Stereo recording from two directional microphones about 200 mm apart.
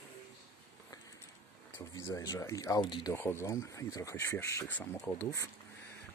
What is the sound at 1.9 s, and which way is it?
Speech, 20° left (ahead or behind).